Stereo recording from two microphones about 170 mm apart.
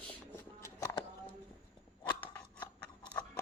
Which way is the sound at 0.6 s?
20° left (ahead or behind).